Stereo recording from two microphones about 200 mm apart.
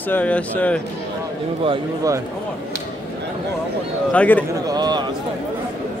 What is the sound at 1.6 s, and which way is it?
Speech, 20° right (ahead or behind).